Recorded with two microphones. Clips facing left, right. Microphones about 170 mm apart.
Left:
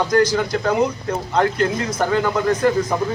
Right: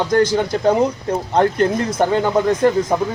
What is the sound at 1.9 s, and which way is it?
Speech, 25° right (ahead or behind).